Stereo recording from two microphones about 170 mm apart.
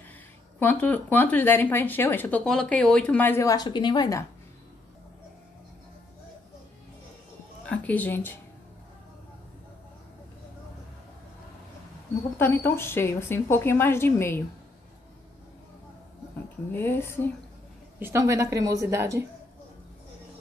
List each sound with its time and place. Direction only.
0.6 s speech: 10° left (ahead or behind)
7.6 s speech: 10° left (ahead or behind)
12.4 s speech: 15° left (ahead or behind)
16.7 s speech: 10° left (ahead or behind)
17.9 s a woman's voice: 15° right (ahead or behind)